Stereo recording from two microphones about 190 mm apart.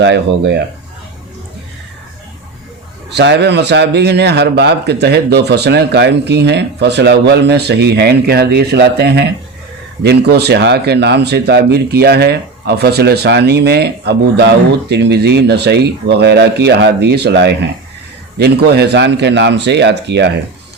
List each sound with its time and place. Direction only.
0.0 s speech: 65° right (ahead or behind)
3.1 s speech: 65° right (ahead or behind)